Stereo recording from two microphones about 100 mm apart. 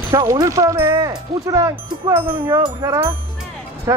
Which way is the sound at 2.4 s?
50° right (ahead or behind).